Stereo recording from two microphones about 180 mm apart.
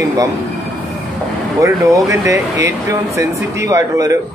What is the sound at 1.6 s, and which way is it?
Speech, 15° right (ahead or behind).